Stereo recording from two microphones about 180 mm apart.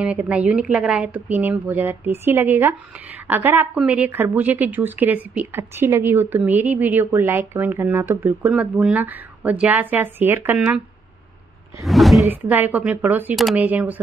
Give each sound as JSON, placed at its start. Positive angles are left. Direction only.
{"t": 0.0, "sound": "speech", "side_deg": -5}
{"t": 11.8, "sound": "speech", "side_deg": 0}
{"t": 12.2, "sound": "speech", "side_deg": -10}